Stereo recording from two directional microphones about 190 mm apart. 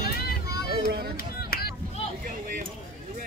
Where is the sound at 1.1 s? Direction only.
55° left (ahead or behind).